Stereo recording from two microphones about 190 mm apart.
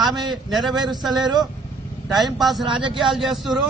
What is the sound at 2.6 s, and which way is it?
Speech, 25° right (ahead or behind).